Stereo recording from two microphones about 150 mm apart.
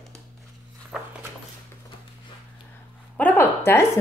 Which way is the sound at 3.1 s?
10° left (ahead or behind).